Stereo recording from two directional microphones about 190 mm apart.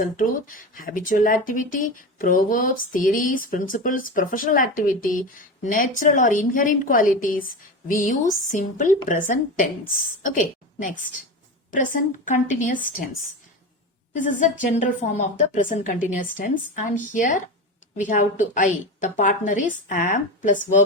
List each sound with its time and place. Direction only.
0.0 s speech: 45° left (ahead or behind)
10.8 s speech: 45° left (ahead or behind)
14.1 s speech: 45° left (ahead or behind)